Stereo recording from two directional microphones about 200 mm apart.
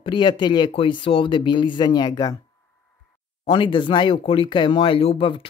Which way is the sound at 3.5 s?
25° left (ahead or behind).